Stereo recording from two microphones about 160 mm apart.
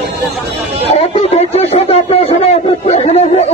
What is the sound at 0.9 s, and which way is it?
Speech, 40° left (ahead or behind).